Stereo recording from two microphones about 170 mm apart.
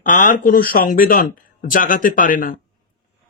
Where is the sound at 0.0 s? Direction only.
50° left (ahead or behind).